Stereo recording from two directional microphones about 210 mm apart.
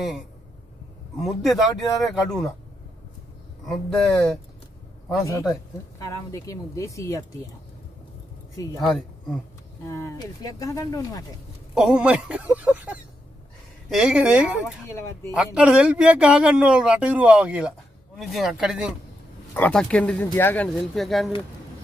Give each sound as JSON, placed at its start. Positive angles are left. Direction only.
{"t": 1.2, "sound": "speech", "side_deg": 0}
{"t": 3.6, "sound": "speech", "side_deg": 0}
{"t": 5.9, "sound": "speech", "side_deg": 15}
{"t": 8.8, "sound": "speech", "side_deg": 0}
{"t": 9.8, "sound": "speech", "side_deg": 15}
{"t": 11.7, "sound": "speech", "side_deg": -5}